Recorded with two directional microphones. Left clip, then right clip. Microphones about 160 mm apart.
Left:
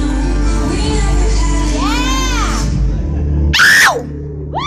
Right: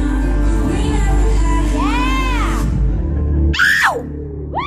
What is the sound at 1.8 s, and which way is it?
Music, 60° left (ahead or behind).